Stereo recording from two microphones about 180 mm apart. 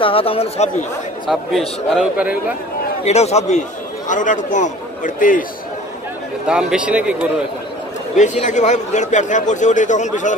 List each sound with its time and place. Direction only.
0.0 s speech: 30° left (ahead or behind)
2.0 s a man's voice: 5° right (ahead or behind)
3.0 s a man's voice: 35° left (ahead or behind)
6.4 s speech: 5° right (ahead or behind)
8.2 s a man's voice: 40° left (ahead or behind)